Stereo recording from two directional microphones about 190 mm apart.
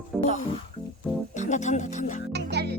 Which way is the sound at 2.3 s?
60° right (ahead or behind).